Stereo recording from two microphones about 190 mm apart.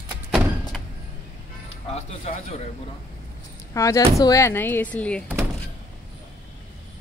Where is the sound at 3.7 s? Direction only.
15° left (ahead or behind).